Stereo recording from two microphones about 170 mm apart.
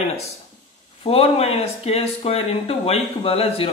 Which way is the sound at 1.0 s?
35° left (ahead or behind).